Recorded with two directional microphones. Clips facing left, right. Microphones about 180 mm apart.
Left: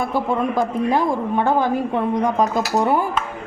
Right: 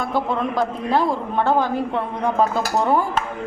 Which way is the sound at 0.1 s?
15° left (ahead or behind).